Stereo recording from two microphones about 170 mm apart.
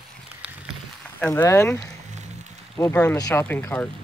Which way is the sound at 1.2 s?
15° left (ahead or behind).